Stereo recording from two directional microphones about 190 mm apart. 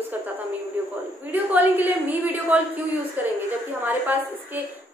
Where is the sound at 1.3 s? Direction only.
10° right (ahead or behind).